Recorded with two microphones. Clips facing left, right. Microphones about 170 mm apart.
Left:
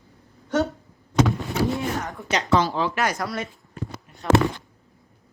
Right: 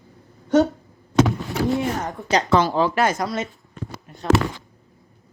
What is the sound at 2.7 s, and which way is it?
Speech, 40° right (ahead or behind).